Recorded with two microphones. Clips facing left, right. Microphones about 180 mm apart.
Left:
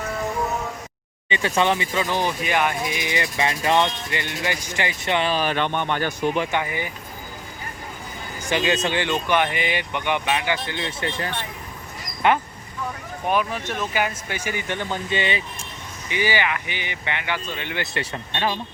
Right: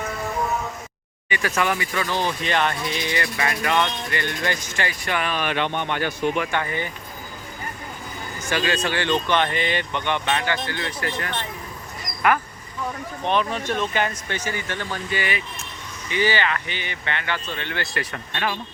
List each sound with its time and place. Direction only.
1.3 s speech: 25° left (ahead or behind)
4.1 s speech: 15° left (ahead or behind); by 6.4 s 45° left (ahead or behind)
6.5 s speech: 15° left (ahead or behind)
8.4 s speech: 20° left (ahead or behind)
13.2 s speech: 10° left (ahead or behind); by 18.5 s 25° left (ahead or behind)